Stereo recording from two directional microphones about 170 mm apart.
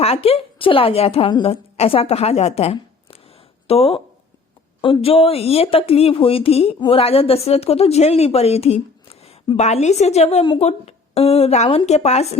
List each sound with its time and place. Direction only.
0.0 s a woman's voice: 35° left (ahead or behind)